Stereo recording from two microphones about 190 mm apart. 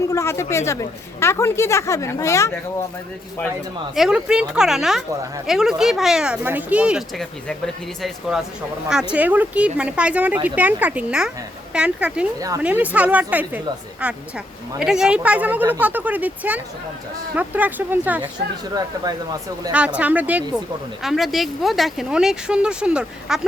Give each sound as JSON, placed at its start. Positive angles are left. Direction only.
{"t": 0.1, "sound": "speech", "side_deg": 15}
{"t": 3.9, "sound": "speech", "side_deg": -5}
{"t": 8.9, "sound": "speech", "side_deg": -5}
{"t": 19.0, "sound": "speech", "side_deg": -20}
{"t": 19.7, "sound": "speech", "side_deg": -5}